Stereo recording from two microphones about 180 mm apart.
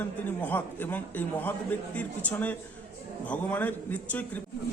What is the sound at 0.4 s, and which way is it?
A man's voice, 10° left (ahead or behind).